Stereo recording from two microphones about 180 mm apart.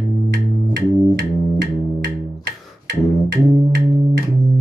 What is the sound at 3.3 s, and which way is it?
Music, 65° right (ahead or behind).